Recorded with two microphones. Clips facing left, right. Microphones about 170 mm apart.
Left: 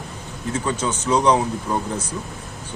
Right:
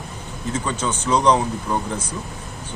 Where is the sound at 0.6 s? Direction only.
10° left (ahead or behind).